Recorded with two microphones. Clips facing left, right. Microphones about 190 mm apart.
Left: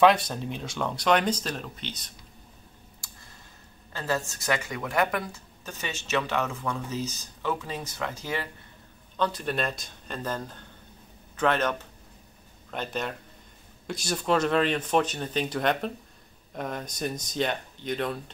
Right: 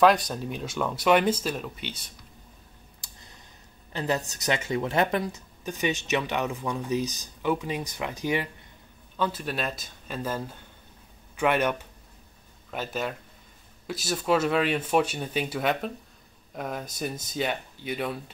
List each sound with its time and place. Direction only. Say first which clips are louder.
0.0 s speech: even; centre (ahead or behind)
3.0 s clicking: even; 20° right (ahead or behind)
3.9 s a woman's voice: right 2 dB; 20° right (ahead or behind)
9.1 s speech: left 1 dB; 5° right (ahead or behind)